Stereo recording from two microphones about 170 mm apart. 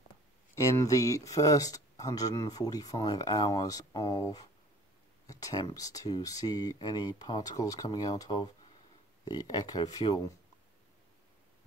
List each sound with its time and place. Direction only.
0.6 s speech: 20° left (ahead or behind)
5.2 s a sound: 20° left (ahead or behind)
5.8 s speech: 20° left (ahead or behind)